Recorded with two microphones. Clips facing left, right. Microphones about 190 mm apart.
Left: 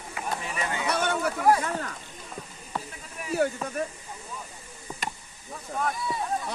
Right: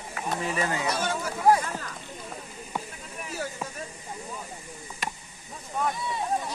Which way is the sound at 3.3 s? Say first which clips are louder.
Left 10 dB; 60° left (ahead or behind).